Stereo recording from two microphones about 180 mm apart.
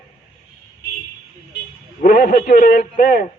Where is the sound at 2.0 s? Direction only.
55° left (ahead or behind).